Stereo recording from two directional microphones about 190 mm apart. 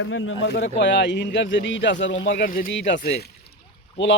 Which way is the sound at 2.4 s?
50° left (ahead or behind).